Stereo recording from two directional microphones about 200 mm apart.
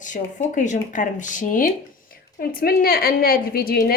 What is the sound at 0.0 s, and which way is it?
A woman's voice, 40° left (ahead or behind).